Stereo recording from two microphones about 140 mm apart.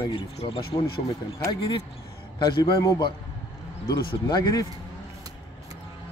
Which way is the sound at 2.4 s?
25° left (ahead or behind).